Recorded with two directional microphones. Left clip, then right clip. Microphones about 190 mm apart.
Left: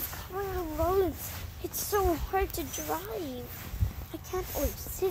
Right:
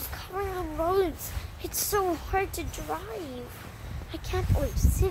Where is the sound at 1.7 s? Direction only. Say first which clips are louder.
Right 1 dB; 35° left (ahead or behind).